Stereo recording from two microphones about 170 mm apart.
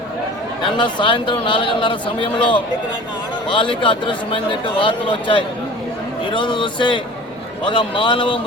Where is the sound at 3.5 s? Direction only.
30° left (ahead or behind).